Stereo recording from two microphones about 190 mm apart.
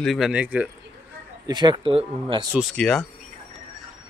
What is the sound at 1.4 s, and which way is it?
Speech, 25° right (ahead or behind).